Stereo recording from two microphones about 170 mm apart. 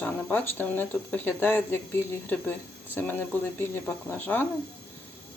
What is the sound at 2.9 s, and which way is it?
Speech, 10° left (ahead or behind).